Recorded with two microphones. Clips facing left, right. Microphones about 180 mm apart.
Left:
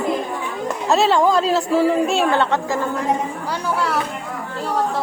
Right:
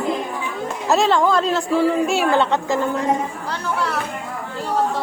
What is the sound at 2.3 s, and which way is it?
Speech, 15° right (ahead or behind).